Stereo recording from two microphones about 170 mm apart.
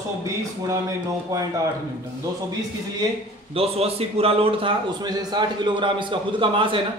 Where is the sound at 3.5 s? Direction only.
35° right (ahead or behind).